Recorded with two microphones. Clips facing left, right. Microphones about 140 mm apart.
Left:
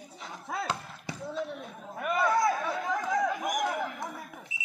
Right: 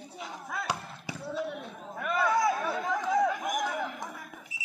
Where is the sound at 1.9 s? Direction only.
Centre (ahead or behind).